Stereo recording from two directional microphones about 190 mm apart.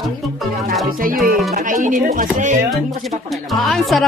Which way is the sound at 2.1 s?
45° right (ahead or behind).